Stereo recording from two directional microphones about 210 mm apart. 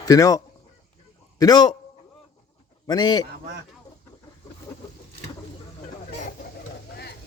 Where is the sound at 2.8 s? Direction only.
20° left (ahead or behind).